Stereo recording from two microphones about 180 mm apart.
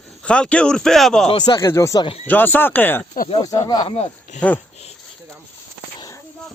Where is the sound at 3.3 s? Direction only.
20° left (ahead or behind).